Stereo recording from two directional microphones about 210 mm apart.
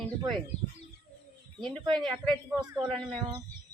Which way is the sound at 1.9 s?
Centre (ahead or behind).